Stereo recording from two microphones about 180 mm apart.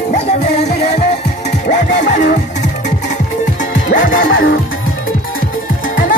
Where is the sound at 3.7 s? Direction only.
50° left (ahead or behind).